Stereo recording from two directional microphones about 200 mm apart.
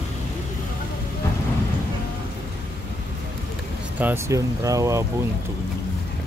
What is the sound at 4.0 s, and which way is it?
Speech, 10° right (ahead or behind).